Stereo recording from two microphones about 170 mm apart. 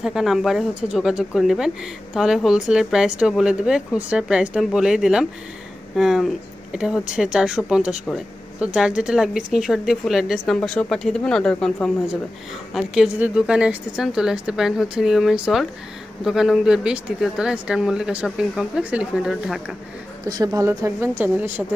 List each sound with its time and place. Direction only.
0.0 s speech: centre (ahead or behind)
20.2 s speech: 20° right (ahead or behind)